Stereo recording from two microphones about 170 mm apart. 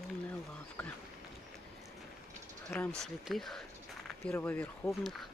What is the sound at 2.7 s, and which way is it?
Speech, 10° left (ahead or behind).